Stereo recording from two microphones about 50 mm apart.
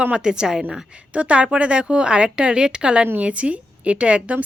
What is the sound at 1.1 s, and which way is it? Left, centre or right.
A woman's voice, right.